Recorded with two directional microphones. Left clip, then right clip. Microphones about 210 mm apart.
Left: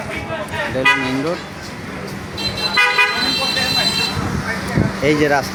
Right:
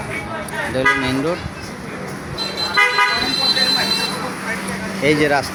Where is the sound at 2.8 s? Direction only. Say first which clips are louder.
Even; 50° left (ahead or behind).